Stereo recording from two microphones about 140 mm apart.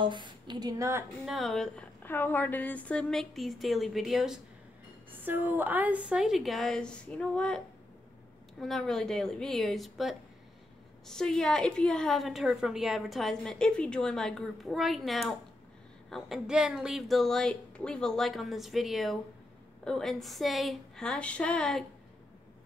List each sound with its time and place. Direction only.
0.0 s a woman's voice: 35° right (ahead or behind)
1.2 s a woman's voice: centre (ahead or behind)
2.0 s a woman's voice: 15° left (ahead or behind); by 4.4 s centre (ahead or behind)
5.2 s a woman's voice: 15° right (ahead or behind); by 21.8 s 5° left (ahead or behind)